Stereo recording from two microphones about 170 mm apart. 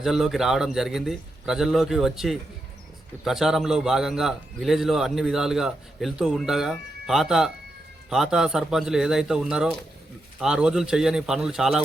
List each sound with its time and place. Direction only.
0.0 s a man's voice: centre (ahead or behind)